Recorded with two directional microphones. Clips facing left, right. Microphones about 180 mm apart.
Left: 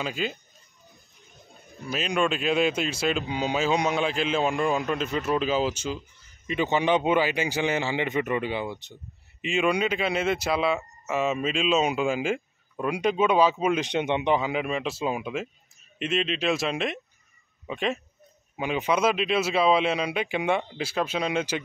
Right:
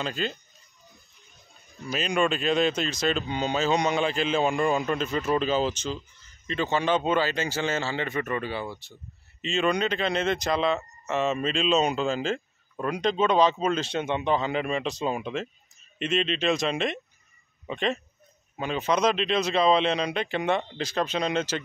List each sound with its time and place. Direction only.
0.0 s speech: 5° left (ahead or behind)
1.9 s speech: centre (ahead or behind)